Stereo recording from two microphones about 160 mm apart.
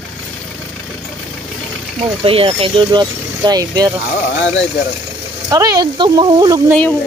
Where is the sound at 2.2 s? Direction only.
35° right (ahead or behind).